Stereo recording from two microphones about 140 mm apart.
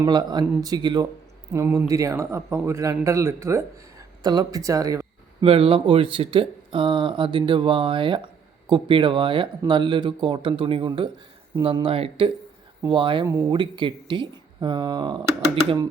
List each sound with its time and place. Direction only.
0.0 s a man's voice: 30° right (ahead or behind)
1.5 s a man's voice: 15° right (ahead or behind)
5.4 s speech: 40° right (ahead or behind)